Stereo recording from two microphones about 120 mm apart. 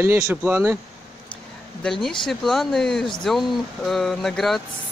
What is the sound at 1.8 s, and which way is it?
Speech, 5° left (ahead or behind).